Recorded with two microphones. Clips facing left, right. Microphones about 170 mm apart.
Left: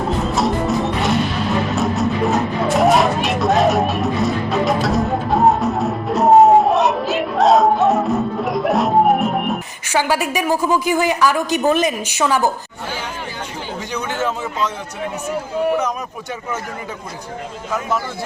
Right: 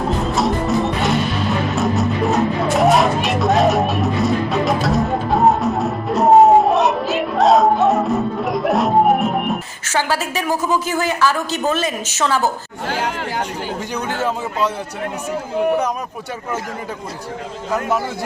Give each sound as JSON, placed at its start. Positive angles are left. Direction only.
{"t": 0.3, "sound": "music", "side_deg": 0}
{"t": 9.9, "sound": "a woman's voice", "side_deg": 15}
{"t": 12.9, "sound": "chatter", "side_deg": -90}
{"t": 13.9, "sound": "a man's voice", "side_deg": -10}